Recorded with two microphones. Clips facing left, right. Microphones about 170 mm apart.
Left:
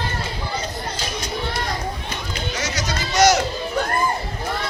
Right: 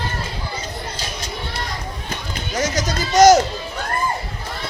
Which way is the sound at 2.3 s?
50° right (ahead or behind).